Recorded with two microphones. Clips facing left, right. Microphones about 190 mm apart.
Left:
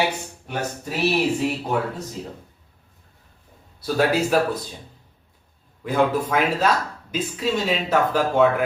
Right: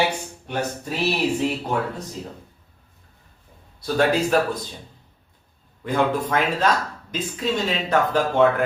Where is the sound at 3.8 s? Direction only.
5° left (ahead or behind).